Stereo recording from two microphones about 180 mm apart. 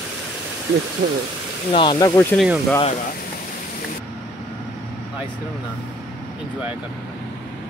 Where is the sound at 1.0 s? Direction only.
45° right (ahead or behind).